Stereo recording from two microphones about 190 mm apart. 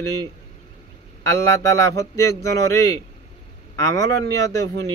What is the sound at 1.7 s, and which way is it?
A man's voice, 15° left (ahead or behind).